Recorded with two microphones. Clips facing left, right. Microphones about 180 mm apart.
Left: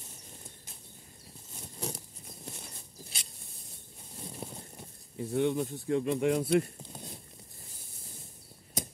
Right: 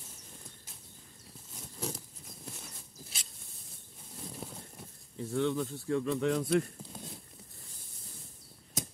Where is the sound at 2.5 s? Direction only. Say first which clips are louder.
Left 2 dB; 10° left (ahead or behind).